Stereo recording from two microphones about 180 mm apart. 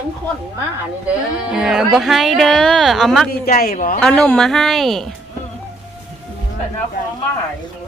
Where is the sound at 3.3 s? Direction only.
55° left (ahead or behind).